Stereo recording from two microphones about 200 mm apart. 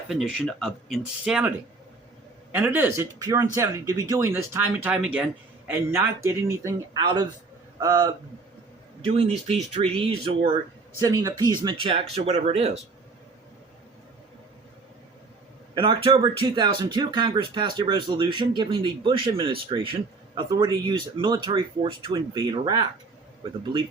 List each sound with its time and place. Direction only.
0.1 s a man's voice: centre (ahead or behind); by 8.1 s 15° right (ahead or behind)
9.0 s speech: 30° right (ahead or behind)
11.0 s speech: 15° right (ahead or behind); by 12.7 s 30° right (ahead or behind)
15.7 s speech: 25° right (ahead or behind)